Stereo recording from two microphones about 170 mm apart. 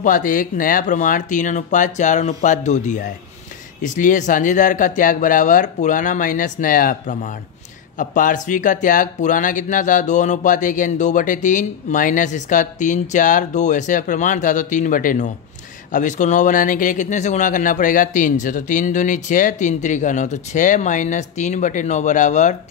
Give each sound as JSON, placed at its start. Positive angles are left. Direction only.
{"t": 0.0, "sound": "speech", "side_deg": 50}